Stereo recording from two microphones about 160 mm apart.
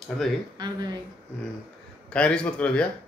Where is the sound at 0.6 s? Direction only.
30° right (ahead or behind).